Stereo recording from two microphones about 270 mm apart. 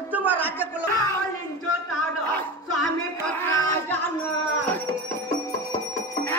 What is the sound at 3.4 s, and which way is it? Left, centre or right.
Music, centre.